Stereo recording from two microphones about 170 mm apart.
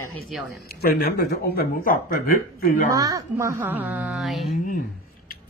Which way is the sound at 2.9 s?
20° right (ahead or behind).